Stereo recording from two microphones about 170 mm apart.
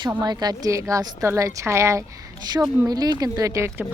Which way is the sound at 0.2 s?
25° right (ahead or behind).